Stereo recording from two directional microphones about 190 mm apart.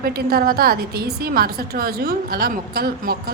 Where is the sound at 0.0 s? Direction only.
50° right (ahead or behind).